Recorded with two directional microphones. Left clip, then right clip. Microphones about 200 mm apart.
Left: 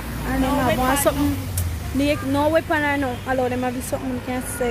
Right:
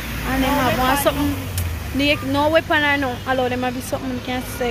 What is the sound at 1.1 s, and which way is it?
Speech, 10° left (ahead or behind).